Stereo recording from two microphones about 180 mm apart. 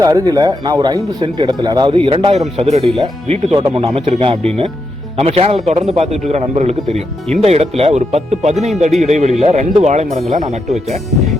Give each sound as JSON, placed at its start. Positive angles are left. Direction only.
{"t": 0.0, "sound": "a man's voice", "side_deg": -20}